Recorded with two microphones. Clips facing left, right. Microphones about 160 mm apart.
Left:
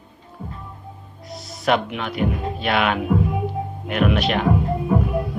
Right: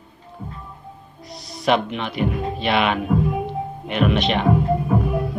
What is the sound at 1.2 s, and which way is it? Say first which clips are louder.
Speech: right 1 dB; centre (ahead or behind).